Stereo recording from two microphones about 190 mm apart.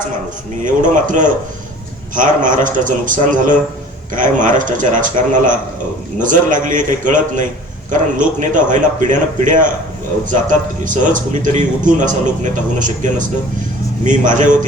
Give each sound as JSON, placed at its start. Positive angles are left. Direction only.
{"t": 0.6, "sound": "a man's voice", "side_deg": -45}